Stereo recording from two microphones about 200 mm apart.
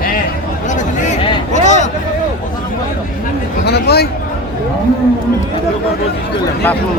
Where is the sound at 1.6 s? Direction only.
35° left (ahead or behind).